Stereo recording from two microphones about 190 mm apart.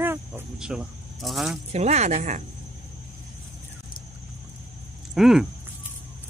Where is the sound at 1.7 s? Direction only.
35° right (ahead or behind).